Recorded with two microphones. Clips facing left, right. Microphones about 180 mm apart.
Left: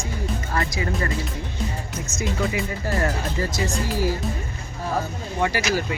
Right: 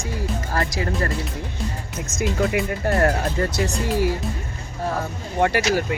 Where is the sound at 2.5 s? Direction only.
60° right (ahead or behind).